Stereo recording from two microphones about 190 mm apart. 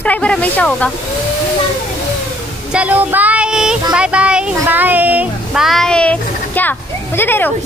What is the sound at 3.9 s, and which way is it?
A woman's voice, 5° right (ahead or behind).